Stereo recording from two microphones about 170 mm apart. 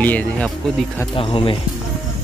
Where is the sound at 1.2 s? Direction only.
30° left (ahead or behind).